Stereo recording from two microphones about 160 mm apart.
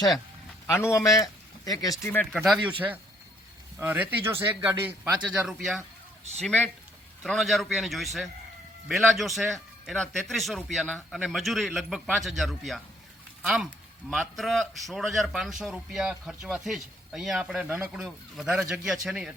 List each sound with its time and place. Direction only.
0.7 s a man's voice: 15° left (ahead or behind)
2.3 s a man's voice: centre (ahead or behind)
3.8 s a man's voice: 10° right (ahead or behind)